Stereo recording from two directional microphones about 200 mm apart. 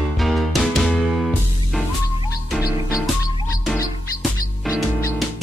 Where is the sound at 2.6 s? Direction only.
15° left (ahead or behind).